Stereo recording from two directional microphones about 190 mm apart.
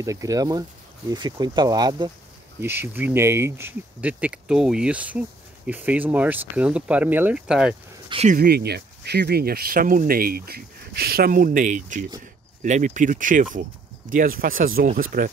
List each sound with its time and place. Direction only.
0.0 s speech: 15° right (ahead or behind)
8.1 s speech: 35° right (ahead or behind)
8.4 s speech: 55° right (ahead or behind)